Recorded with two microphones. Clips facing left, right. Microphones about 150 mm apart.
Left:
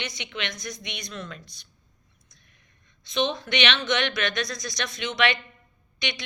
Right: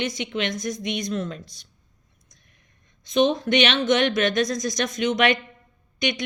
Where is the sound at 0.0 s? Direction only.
40° right (ahead or behind).